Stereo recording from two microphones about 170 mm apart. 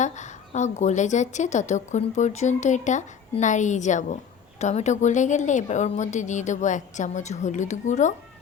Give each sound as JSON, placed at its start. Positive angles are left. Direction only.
{"t": 0.0, "sound": "a woman's voice", "side_deg": 45}